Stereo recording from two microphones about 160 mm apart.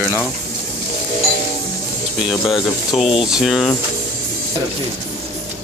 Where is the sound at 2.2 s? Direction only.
Centre (ahead or behind).